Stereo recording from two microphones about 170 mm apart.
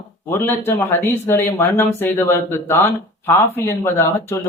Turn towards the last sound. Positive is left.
turn(degrees=15)  # may be behind; listen again after turning